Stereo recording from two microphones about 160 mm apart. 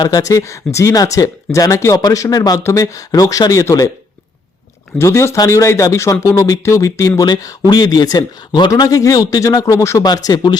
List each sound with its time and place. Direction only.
0.0 s speech: 25° left (ahead or behind)
4.9 s speech: 15° left (ahead or behind)